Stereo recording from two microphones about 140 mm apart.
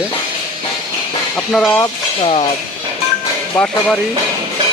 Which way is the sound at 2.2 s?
50° left (ahead or behind).